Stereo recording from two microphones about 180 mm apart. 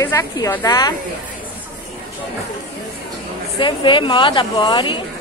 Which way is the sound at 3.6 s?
25° left (ahead or behind).